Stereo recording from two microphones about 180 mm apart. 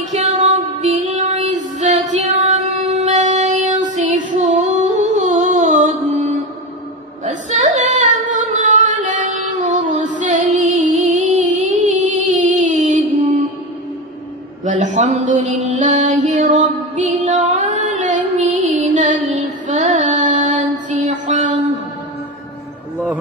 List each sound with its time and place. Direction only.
0.1 s music: 40° right (ahead or behind)
7.2 s singing: 40° right (ahead or behind)
14.6 s mantra: 40° right (ahead or behind)
19.7 s music: 45° right (ahead or behind)